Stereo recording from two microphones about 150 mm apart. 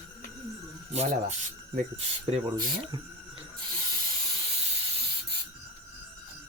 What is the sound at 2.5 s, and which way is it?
Speech, 30° right (ahead or behind).